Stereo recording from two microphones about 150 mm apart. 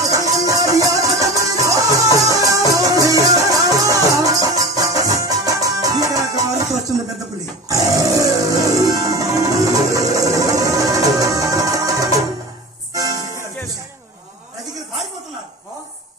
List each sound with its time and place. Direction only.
0.0 s music: 25° right (ahead or behind)